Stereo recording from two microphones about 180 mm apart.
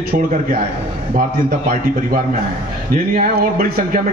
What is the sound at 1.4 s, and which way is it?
A man's voice, 55° right (ahead or behind).